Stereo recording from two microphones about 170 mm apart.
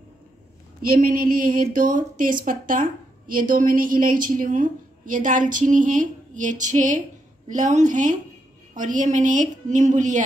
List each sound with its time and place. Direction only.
0.8 s a woman's voice: 60° right (ahead or behind)